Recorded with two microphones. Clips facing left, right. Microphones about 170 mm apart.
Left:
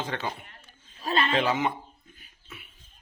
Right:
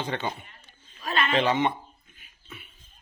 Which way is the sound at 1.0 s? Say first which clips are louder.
Left 1 dB; 35° left (ahead or behind).